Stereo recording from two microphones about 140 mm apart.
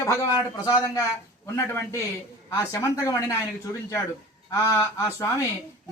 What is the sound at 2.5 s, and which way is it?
Speech, 20° left (ahead or behind).